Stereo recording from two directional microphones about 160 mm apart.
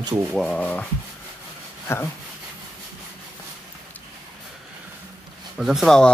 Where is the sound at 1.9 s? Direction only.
15° left (ahead or behind).